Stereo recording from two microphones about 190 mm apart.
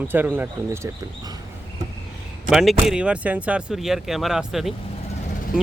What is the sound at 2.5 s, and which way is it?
Speech, centre (ahead or behind).